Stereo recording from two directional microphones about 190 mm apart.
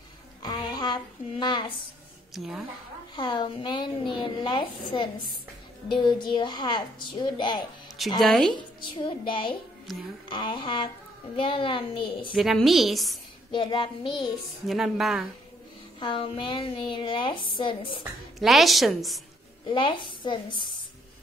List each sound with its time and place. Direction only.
0.4 s a sound: 20° left (ahead or behind)
2.3 s a woman's voice: centre (ahead or behind)
3.2 s a woman's voice: 25° left (ahead or behind)
8.2 s a woman's voice: centre (ahead or behind)
8.5 s a woman's voice: 25° left (ahead or behind)
9.9 s a woman's voice: centre (ahead or behind)
10.3 s a woman's voice: 25° left (ahead or behind)
12.3 s a woman's voice: centre (ahead or behind)
13.5 s a woman's voice: 25° left (ahead or behind)
14.7 s a woman's voice: centre (ahead or behind)
16.0 s a woman's voice: 25° left (ahead or behind)
18.4 s a woman's voice: centre (ahead or behind)
19.6 s a woman's voice: 25° left (ahead or behind)